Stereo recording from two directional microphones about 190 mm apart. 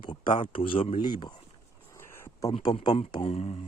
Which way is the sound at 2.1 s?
15° left (ahead or behind).